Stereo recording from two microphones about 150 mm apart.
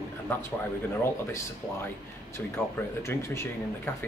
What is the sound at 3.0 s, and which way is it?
A man's voice, 15° left (ahead or behind).